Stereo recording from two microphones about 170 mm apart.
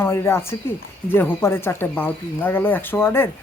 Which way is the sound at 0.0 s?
15° left (ahead or behind).